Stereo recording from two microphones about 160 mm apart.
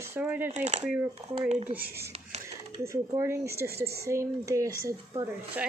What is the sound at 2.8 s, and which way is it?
Speech, 20° right (ahead or behind).